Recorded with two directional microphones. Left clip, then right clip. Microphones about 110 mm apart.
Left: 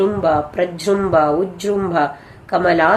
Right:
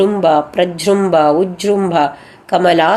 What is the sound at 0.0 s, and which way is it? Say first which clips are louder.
A woman's voice: right 4 dB; 40° right (ahead or behind).